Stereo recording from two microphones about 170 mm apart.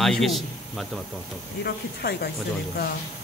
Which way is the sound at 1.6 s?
65° left (ahead or behind).